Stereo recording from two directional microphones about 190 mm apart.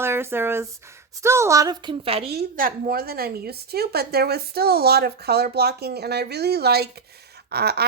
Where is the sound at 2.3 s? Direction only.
50° right (ahead or behind).